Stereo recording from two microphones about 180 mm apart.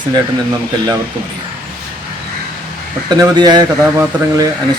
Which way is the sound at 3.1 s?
20° right (ahead or behind).